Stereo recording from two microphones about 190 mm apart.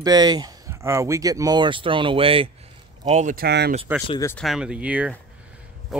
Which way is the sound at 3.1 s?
40° right (ahead or behind).